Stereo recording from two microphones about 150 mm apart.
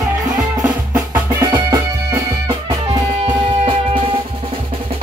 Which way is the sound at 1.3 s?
20° right (ahead or behind).